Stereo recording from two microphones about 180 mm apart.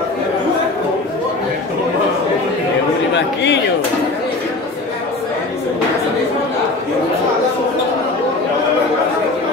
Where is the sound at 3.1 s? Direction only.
80° left.